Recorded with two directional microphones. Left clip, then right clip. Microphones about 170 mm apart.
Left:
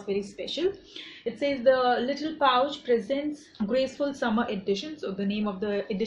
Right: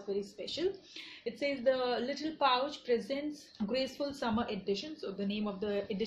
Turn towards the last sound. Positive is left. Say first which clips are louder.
# left 6 dB
turn(degrees=-5)  # may be behind; listen again after turning